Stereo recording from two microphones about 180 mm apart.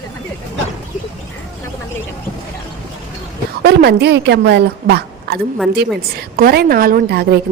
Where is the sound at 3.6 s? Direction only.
65° right (ahead or behind).